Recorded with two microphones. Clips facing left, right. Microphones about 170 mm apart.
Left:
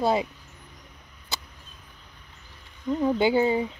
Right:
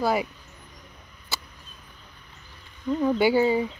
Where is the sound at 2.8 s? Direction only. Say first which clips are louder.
Right 1 dB; 10° left (ahead or behind).